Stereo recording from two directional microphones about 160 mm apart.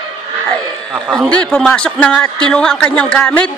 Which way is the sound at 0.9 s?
5° right (ahead or behind).